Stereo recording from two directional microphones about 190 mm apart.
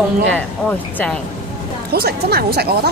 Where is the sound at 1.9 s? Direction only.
55° right (ahead or behind).